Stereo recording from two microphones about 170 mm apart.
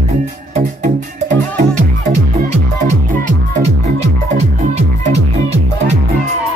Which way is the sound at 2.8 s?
50° right (ahead or behind).